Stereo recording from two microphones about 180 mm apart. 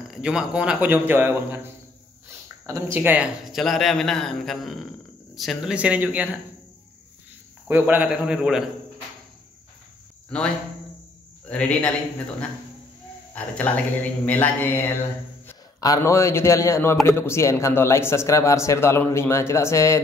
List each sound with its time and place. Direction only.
0.1 s a man's voice: 5° right (ahead or behind)
7.6 s a man's voice: 10° right (ahead or behind)
10.3 s a man's voice: 5° left (ahead or behind)
13.3 s a man's voice: 10° left (ahead or behind)